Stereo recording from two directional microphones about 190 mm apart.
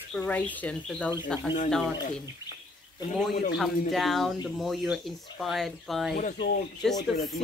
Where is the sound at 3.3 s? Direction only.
60° left (ahead or behind).